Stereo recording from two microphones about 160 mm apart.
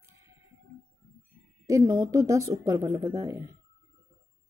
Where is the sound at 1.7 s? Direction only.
20° right (ahead or behind).